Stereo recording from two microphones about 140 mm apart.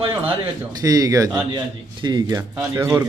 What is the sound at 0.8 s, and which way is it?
A man's voice, 25° right (ahead or behind).